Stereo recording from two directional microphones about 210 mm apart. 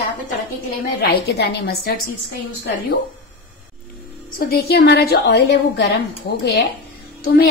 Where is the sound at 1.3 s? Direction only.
50° left (ahead or behind).